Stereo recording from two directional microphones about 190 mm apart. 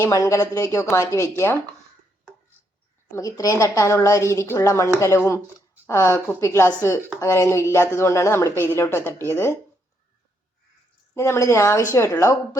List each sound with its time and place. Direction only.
0.0 s a woman's voice: 15° left (ahead or behind)
3.1 s a woman's voice: 15° left (ahead or behind)
11.1 s a woman's voice: 15° left (ahead or behind)